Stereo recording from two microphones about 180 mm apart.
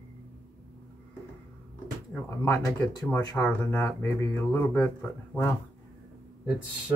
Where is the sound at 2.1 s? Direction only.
15° left (ahead or behind).